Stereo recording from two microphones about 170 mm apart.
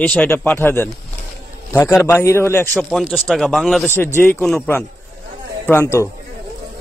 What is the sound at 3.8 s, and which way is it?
A man's voice, 15° left (ahead or behind).